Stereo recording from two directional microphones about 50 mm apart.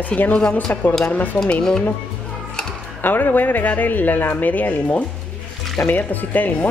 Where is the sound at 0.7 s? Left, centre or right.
Left.